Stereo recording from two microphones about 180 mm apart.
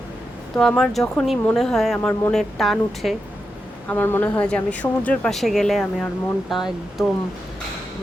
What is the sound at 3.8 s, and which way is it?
A woman's voice, 10° left (ahead or behind).